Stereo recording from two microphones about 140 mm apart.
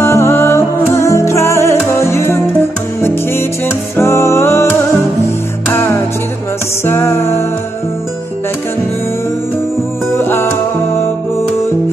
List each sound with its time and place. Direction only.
0.0 s music: 20° left (ahead or behind)
3.9 s music: 20° left (ahead or behind)
5.7 s music: 20° left (ahead or behind)
10.1 s music: 20° left (ahead or behind)